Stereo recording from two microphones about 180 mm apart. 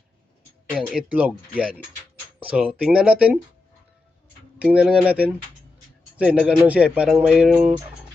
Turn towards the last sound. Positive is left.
turn(degrees=0)  # may be behind; listen again after turning